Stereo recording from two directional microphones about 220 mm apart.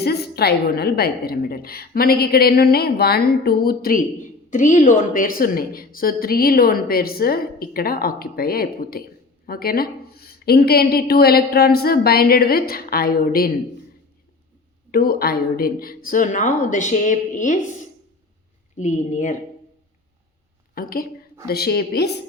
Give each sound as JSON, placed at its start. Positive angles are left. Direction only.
{"t": 0.0, "sound": "a woman's voice", "side_deg": 45}
{"t": 14.8, "sound": "a woman's voice", "side_deg": 40}
{"t": 20.7, "sound": "a woman's voice", "side_deg": 40}